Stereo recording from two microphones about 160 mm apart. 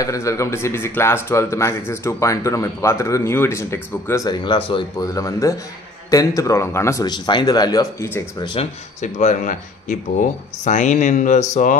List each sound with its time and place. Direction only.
0.0 s a man's voice: 20° left (ahead or behind)
4.9 s speech: 20° left (ahead or behind)
8.4 s speech: 30° left (ahead or behind)
9.0 s speech: 50° left (ahead or behind)